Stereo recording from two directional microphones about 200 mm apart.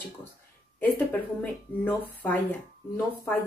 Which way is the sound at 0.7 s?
10° left (ahead or behind).